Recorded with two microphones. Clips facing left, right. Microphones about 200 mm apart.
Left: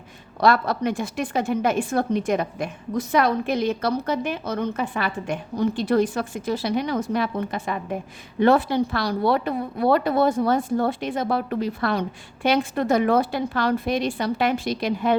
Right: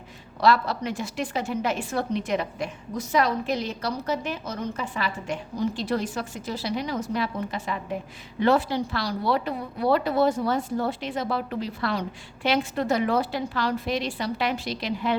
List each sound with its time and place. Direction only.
0.3 s a woman's voice: 50° left (ahead or behind)